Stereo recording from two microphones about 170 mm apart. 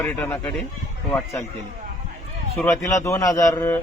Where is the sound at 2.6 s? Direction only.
20° left (ahead or behind).